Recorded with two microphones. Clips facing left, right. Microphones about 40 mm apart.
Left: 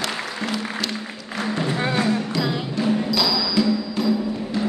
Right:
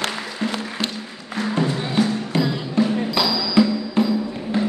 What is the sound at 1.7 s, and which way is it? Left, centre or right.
Music, left.